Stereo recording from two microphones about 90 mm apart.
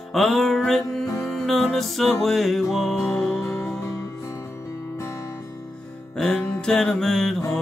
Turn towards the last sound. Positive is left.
turn(degrees=5)  # may be behind; listen again after turning